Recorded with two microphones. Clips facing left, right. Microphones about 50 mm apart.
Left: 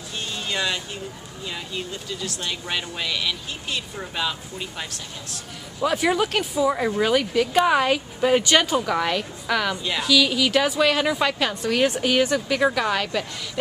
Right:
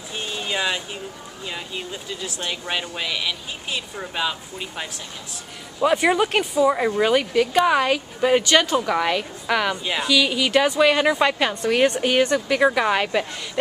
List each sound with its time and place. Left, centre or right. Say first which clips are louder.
0.2 s a sound: right 2 dB; centre
1.4 s speech: even; centre
12.5 s a woman's voice: right 4 dB; centre